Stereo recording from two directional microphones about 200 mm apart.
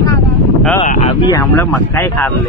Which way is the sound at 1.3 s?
15° left (ahead or behind).